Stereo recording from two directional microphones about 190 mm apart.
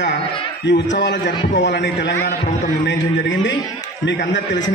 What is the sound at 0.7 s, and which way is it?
A man's voice, 70° left (ahead or behind).